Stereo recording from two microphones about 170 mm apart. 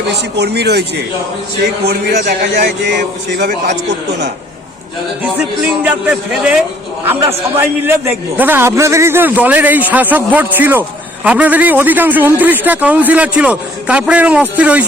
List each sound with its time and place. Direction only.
0.1 s speech: 80° right
2.5 s speech: 75° right (ahead or behind)
5.8 s a man's voice: 10° right (ahead or behind)